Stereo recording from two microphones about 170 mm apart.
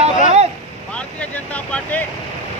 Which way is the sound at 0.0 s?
40° right (ahead or behind).